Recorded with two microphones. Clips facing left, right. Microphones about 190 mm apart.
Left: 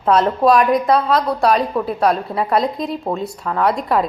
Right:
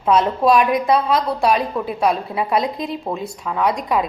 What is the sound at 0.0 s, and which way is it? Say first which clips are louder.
A woman's voice: left 2 dB; centre (ahead or behind).